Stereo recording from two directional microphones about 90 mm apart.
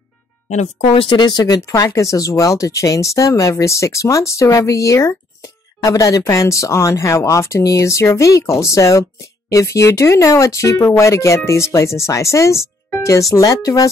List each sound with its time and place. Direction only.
0.9 s speech: 65° left (ahead or behind)
1.9 s speech: 35° left (ahead or behind)
13.3 s speech: 45° left (ahead or behind)